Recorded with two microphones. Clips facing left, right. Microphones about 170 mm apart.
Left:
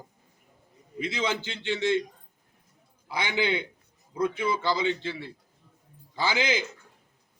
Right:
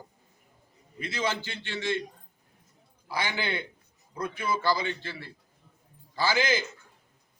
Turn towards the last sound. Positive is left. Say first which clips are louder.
# even
turn(degrees=15)  # may be behind; listen again after turning